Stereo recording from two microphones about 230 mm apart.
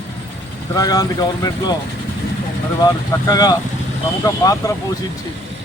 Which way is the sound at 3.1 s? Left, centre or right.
Centre.